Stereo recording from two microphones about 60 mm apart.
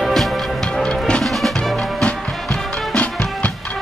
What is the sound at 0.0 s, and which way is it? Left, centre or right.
Music, centre.